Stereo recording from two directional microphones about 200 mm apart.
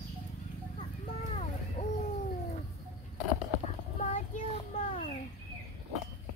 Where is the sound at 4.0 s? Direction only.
40° left (ahead or behind).